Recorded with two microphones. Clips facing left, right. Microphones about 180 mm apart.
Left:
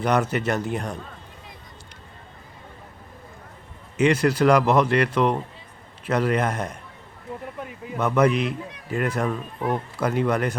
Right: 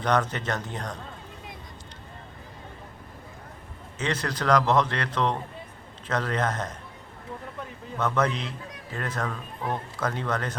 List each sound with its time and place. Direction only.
0.0 s a man's voice: 10° left (ahead or behind)
3.9 s a man's voice: 10° left (ahead or behind)